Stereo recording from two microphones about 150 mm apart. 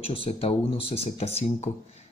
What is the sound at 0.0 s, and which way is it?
Speech, 40° left (ahead or behind).